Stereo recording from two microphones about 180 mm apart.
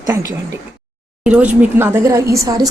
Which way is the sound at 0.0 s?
20° right (ahead or behind).